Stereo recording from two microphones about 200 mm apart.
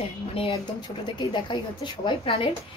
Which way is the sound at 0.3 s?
25° left (ahead or behind).